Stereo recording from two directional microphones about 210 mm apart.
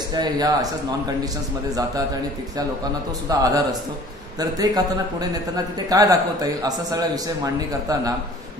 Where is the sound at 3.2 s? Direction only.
15° right (ahead or behind).